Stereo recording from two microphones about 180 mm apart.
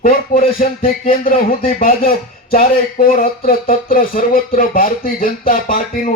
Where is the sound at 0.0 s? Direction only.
50° left (ahead or behind).